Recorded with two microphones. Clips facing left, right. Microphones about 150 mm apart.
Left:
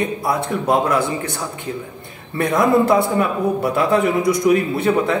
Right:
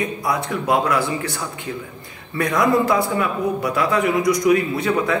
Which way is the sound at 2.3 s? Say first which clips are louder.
Left 2 dB; 25° left (ahead or behind).